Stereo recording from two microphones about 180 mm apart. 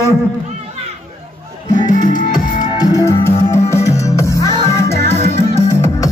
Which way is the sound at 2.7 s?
15° left (ahead or behind).